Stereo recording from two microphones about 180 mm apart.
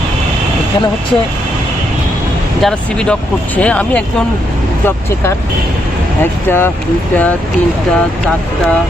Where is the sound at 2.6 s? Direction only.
5° left (ahead or behind).